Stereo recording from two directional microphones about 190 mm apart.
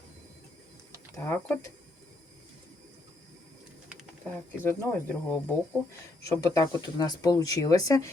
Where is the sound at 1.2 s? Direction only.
10° left (ahead or behind).